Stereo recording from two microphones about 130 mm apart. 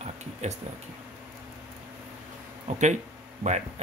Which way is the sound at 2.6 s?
65° right (ahead or behind).